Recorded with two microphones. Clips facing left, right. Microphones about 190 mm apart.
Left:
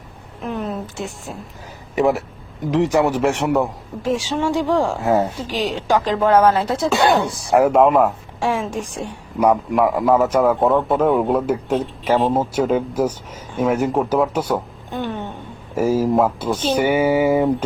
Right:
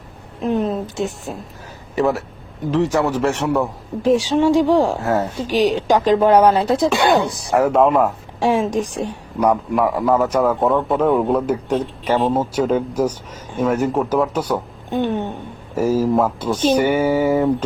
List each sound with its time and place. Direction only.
0.4 s speech: 20° right (ahead or behind)
2.0 s a man's voice: 15° left (ahead or behind)
4.0 s speech: 15° right (ahead or behind)
7.6 s a man's voice: centre (ahead or behind)
8.4 s a woman's voice: 20° right (ahead or behind)
9.0 s a man's voice: 10° left (ahead or behind)
14.8 s a sound: 20° right (ahead or behind)
15.7 s a man's voice: 10° left (ahead or behind)